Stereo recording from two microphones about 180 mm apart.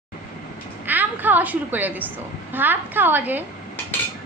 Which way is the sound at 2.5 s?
10° right (ahead or behind).